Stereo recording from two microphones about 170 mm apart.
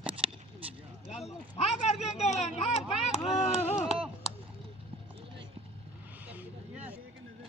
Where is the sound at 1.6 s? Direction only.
40° left (ahead or behind).